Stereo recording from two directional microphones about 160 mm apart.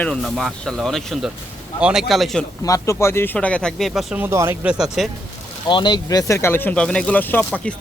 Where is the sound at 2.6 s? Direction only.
20° left (ahead or behind); by 4.2 s centre (ahead or behind).